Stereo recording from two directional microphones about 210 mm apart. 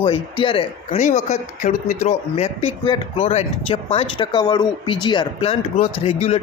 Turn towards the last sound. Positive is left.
turn(degrees=30)  # may be behind; listen again after turning